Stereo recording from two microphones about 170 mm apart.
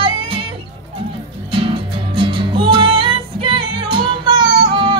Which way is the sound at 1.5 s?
30° right (ahead or behind).